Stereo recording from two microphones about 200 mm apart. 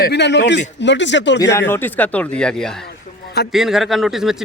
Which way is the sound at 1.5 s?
10° left (ahead or behind).